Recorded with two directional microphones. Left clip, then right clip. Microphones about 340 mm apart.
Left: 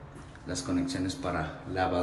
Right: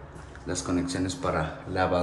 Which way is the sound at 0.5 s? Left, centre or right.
Centre.